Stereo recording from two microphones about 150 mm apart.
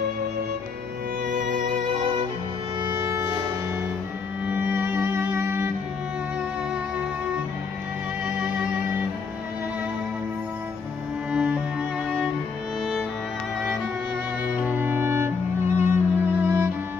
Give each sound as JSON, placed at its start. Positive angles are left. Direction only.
{"t": 1.3, "sound": "music", "side_deg": -65}
{"t": 2.8, "sound": "music", "side_deg": -20}
{"t": 4.5, "sound": "music", "side_deg": -10}
{"t": 11.3, "sound": "music", "side_deg": -5}
{"t": 14.5, "sound": "music", "side_deg": -10}